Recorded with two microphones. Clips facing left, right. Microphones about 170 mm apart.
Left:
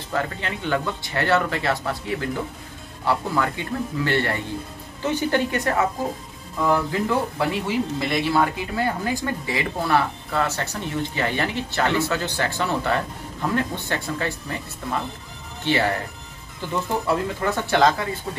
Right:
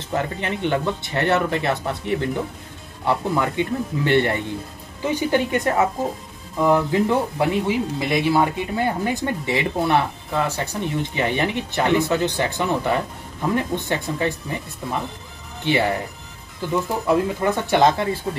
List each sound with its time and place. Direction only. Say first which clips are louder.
0.1 s speech: right 2 dB; 20° right (ahead or behind)
16.6 s speech: right 5 dB; 5° right (ahead or behind)
17.0 s speech: right 4 dB; 15° right (ahead or behind)